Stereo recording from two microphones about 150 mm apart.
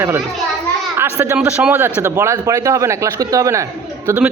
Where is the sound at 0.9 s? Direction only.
15° right (ahead or behind).